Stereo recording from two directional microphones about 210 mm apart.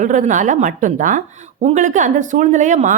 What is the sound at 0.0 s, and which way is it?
Speech, 35° right (ahead or behind).